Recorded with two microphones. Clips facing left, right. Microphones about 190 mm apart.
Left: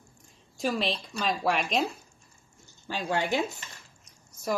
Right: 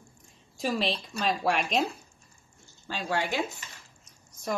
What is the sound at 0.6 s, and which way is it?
Speech, centre (ahead or behind).